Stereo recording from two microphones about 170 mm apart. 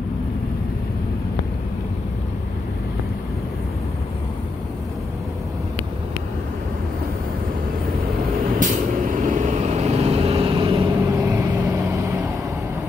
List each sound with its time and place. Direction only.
8.5 s vehicle: 50° right (ahead or behind); by 10.9 s 30° right (ahead or behind)
11.0 s vehicle: 15° right (ahead or behind)